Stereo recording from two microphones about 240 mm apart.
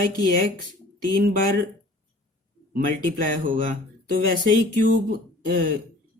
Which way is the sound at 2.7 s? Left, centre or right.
Right.